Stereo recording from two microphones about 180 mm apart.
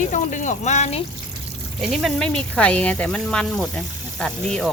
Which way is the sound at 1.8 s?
Centre (ahead or behind).